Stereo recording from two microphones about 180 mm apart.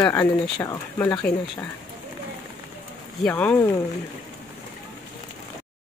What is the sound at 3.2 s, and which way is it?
Speech, 5° left (ahead or behind).